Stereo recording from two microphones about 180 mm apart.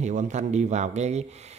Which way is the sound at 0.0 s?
40° right (ahead or behind).